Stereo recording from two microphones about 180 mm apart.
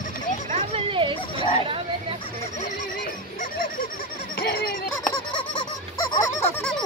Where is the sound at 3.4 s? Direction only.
50° left (ahead or behind).